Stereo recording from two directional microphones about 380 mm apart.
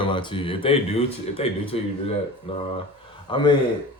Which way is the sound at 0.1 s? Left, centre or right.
Centre.